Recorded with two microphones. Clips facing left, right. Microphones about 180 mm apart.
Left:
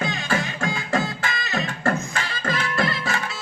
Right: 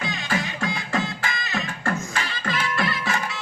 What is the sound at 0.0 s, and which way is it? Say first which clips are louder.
Music: left 2 dB; 45° left (ahead or behind).